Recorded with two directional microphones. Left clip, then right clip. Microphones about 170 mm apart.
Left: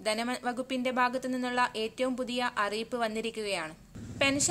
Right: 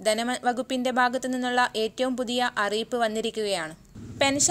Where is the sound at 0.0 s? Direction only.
25° right (ahead or behind).